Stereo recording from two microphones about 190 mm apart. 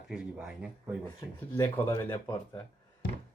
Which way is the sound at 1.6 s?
15° left (ahead or behind).